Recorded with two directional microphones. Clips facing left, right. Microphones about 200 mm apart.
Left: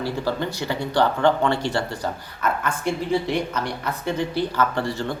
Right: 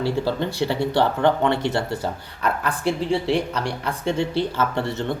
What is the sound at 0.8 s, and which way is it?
Speech, 20° right (ahead or behind).